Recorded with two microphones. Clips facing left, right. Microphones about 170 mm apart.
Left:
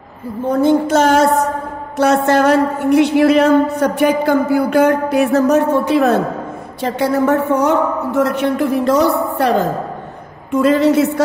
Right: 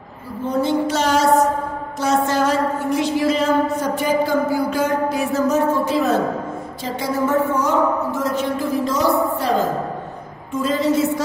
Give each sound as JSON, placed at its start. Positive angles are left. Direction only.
{"t": 0.5, "sound": "music", "side_deg": 50}
{"t": 2.0, "sound": "a woman's voice", "side_deg": 65}